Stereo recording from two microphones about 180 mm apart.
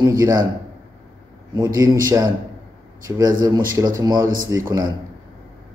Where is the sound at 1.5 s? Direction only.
20° right (ahead or behind).